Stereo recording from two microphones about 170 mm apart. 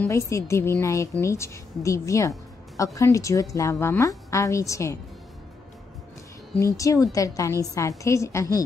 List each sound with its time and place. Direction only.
0.0 s a woman's voice: 15° left (ahead or behind)
6.5 s a woman's voice: 20° left (ahead or behind)